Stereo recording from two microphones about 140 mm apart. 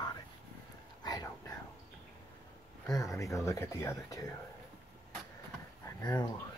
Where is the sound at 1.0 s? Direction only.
25° left (ahead or behind).